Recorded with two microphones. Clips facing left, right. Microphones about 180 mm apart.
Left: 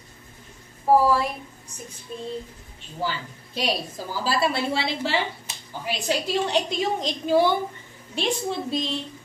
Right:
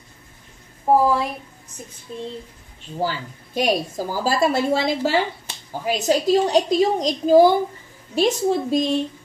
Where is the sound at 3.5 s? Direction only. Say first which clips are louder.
Right 6 dB; 45° right (ahead or behind).